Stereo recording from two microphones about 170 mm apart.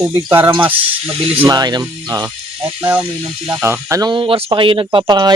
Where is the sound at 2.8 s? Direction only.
10° right (ahead or behind); by 5.3 s 25° right (ahead or behind).